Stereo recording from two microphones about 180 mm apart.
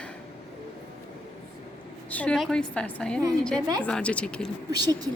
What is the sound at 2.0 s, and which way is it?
A woman's voice, 10° left (ahead or behind).